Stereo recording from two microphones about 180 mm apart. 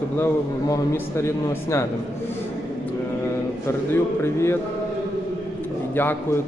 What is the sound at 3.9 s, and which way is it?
Speech, 15° left (ahead or behind).